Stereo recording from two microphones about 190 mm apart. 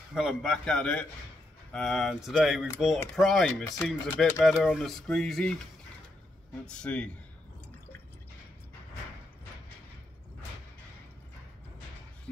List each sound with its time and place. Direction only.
0.1 s speech: centre (ahead or behind)
3.6 s speech: 15° left (ahead or behind)
4.3 s speech: 5° left (ahead or behind)
6.6 s speech: 5° left (ahead or behind)